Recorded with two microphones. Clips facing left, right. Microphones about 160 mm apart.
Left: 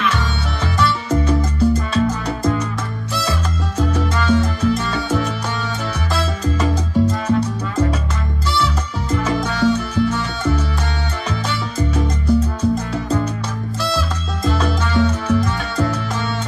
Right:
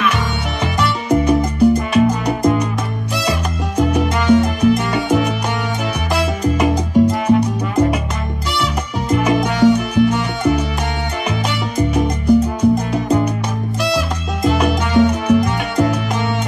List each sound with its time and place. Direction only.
0.7 s music: 15° right (ahead or behind)
2.0 s salsa music: 15° right (ahead or behind)
9.1 s salsa music: 15° right (ahead or behind)
11.7 s music: 15° right (ahead or behind)
13.8 s salsa music: 15° right (ahead or behind)